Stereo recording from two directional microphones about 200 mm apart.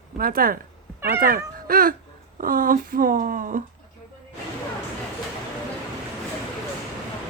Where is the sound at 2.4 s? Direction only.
45° right (ahead or behind).